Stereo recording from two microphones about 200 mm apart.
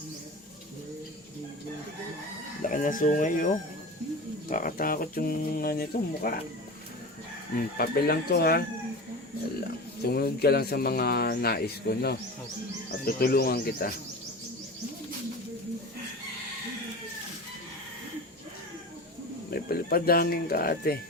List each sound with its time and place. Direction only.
2.6 s speech: 40° left (ahead or behind)
7.8 s speech: 50° left (ahead or behind)
10.0 s speech: 50° left (ahead or behind)
19.5 s speech: 50° left (ahead or behind)